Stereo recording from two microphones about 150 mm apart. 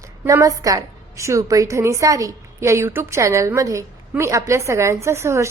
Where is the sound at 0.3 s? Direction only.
20° right (ahead or behind).